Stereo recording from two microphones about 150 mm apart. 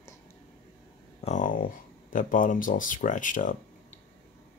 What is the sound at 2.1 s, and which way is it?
Speech, 60° left (ahead or behind).